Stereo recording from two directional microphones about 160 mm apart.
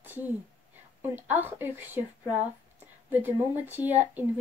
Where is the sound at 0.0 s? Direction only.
10° right (ahead or behind).